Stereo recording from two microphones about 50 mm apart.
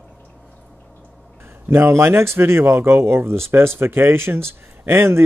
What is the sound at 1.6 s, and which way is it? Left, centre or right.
Speech, right.